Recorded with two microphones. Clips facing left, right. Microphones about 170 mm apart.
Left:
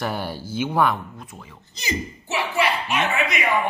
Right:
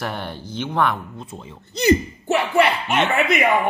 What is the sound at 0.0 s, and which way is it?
Speech, 5° left (ahead or behind).